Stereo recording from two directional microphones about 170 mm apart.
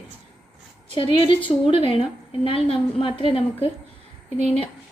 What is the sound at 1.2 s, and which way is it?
A woman's voice, 30° left (ahead or behind).